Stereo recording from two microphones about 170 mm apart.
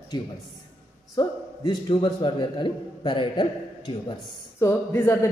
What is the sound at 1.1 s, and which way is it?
A man's voice, 25° left (ahead or behind).